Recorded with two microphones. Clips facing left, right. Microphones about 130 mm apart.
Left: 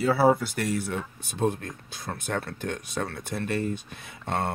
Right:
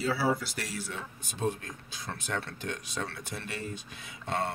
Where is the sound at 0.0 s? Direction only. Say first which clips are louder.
Left 8 dB; 55° left (ahead or behind).